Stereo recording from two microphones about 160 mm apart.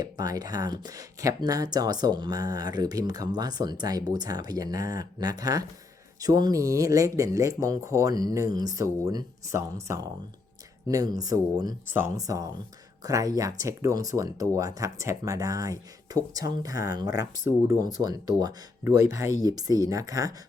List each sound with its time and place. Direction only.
0.0 s speech: 25° right (ahead or behind)